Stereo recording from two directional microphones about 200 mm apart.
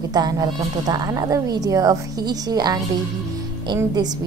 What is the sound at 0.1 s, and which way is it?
A woman's voice, 20° right (ahead or behind).